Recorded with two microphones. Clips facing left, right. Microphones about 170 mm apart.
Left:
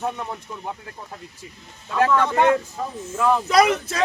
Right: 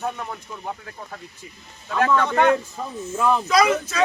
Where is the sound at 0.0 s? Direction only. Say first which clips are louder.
Left 1 dB; 25° left (ahead or behind).